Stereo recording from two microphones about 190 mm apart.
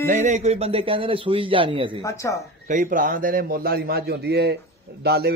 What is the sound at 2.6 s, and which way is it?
A man's voice, 45° right (ahead or behind).